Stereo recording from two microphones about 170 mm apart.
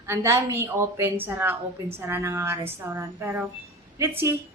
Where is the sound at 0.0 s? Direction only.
15° right (ahead or behind).